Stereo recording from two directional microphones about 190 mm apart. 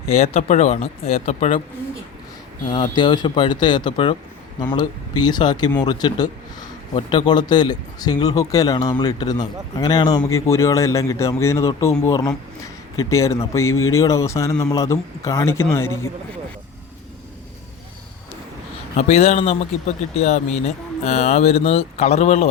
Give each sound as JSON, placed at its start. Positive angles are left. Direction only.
{"t": 0.1, "sound": "speech", "side_deg": 35}
{"t": 2.6, "sound": "a man's voice", "side_deg": 25}
{"t": 13.7, "sound": "speech", "side_deg": 90}
{"t": 13.9, "sound": "speech", "side_deg": 15}
{"t": 18.9, "sound": "speech", "side_deg": 35}